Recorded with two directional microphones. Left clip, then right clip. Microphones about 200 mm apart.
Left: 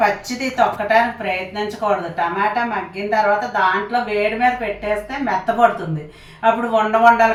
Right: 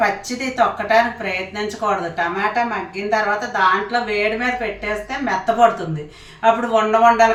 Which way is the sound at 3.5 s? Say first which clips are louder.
Right 3 dB; 10° right (ahead or behind).